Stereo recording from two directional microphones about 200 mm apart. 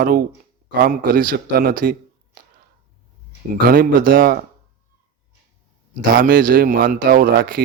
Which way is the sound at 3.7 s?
45° right (ahead or behind).